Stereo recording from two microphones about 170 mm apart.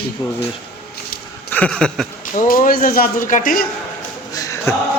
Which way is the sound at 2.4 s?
55° left (ahead or behind).